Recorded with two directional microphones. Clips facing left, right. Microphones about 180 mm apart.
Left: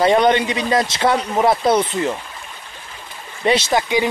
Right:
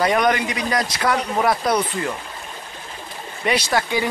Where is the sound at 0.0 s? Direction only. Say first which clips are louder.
Left 4 dB; 25° left (ahead or behind).